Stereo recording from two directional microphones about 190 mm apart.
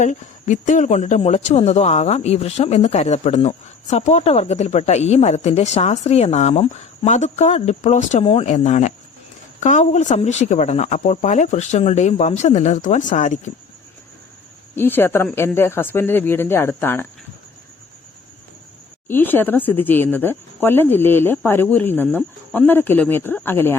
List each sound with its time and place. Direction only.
0.0 s speech: 40° left (ahead or behind)
14.8 s speech: 10° left (ahead or behind)
19.0 s speech: 10° left (ahead or behind)